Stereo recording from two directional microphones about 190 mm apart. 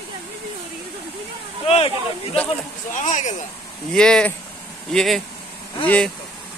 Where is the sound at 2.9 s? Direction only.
40° left (ahead or behind).